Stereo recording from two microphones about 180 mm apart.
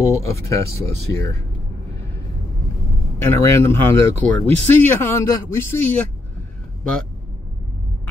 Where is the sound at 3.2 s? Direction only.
15° left (ahead or behind).